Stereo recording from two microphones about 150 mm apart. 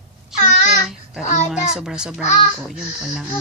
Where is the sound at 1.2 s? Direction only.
50° left (ahead or behind).